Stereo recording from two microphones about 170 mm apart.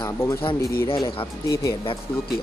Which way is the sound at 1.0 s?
30° left (ahead or behind).